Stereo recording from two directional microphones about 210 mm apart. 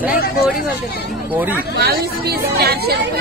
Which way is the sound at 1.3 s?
10° right (ahead or behind).